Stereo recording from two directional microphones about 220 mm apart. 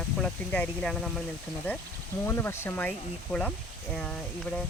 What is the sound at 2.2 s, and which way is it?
Speech, 10° left (ahead or behind).